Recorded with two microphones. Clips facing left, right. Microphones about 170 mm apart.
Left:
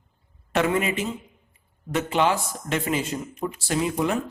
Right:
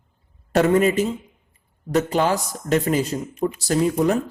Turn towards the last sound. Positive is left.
turn(degrees=-40)  # may be behind; listen again after turning